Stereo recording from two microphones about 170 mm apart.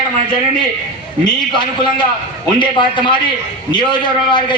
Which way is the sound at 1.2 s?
25° left (ahead or behind).